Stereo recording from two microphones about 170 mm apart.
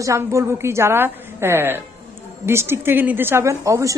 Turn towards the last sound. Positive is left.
turn(degrees=-20)  # may be behind; listen again after turning